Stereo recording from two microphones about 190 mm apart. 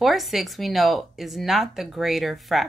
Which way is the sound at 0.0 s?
Centre (ahead or behind).